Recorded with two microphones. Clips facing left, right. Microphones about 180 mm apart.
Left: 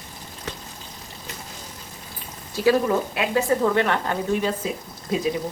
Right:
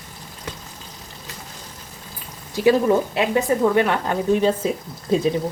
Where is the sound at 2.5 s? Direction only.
20° right (ahead or behind).